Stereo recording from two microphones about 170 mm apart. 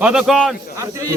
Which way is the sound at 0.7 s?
15° right (ahead or behind).